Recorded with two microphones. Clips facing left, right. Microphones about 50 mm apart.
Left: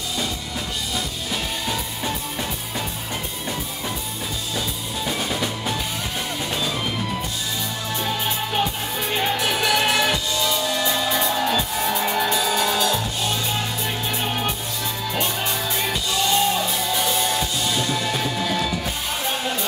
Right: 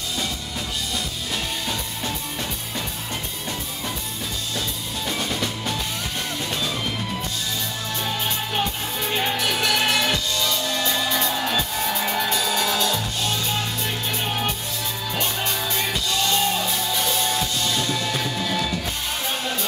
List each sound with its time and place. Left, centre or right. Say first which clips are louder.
4.6 s music: left 3 dB; centre
8.0 s music: left 2 dB; centre